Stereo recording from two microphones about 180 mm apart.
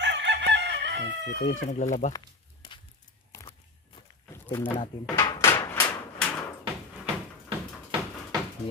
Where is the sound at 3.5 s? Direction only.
30° left (ahead or behind).